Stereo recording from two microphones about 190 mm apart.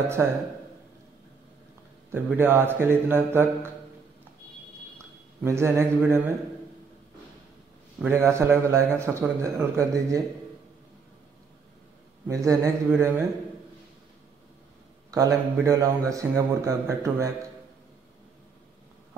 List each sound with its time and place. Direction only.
0.2 s a man's voice: 15° right (ahead or behind)
2.1 s a man's voice: 10° right (ahead or behind)
5.4 s a man's voice: 15° right (ahead or behind)
8.0 s a man's voice: 10° right (ahead or behind)
12.3 s a man's voice: 15° right (ahead or behind)
15.0 s a man's voice: 15° right (ahead or behind)